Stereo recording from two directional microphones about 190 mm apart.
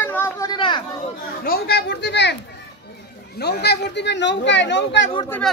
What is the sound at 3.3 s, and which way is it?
Speech, 60° left (ahead or behind).